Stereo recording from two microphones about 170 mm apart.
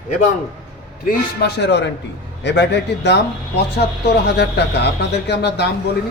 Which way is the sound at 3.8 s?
75° left (ahead or behind).